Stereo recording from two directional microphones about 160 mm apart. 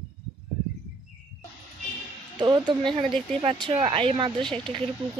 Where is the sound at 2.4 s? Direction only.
30° right (ahead or behind).